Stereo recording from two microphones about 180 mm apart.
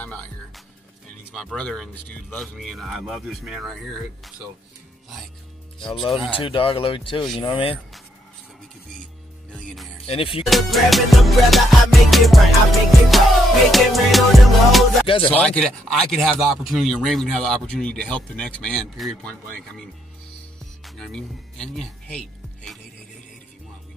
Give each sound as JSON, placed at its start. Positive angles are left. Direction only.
{"t": 0.0, "sound": "music", "side_deg": 5}
{"t": 1.3, "sound": "a man's voice", "side_deg": 5}
{"t": 6.3, "sound": "speech", "side_deg": 30}
{"t": 9.5, "sound": "music", "side_deg": 5}
{"t": 10.0, "sound": "speech", "side_deg": 30}
{"t": 10.4, "sound": "a man's voice", "side_deg": 0}
{"t": 15.0, "sound": "speech", "side_deg": 30}
{"t": 15.3, "sound": "a man's voice", "side_deg": 5}
{"t": 20.8, "sound": "speech", "side_deg": 0}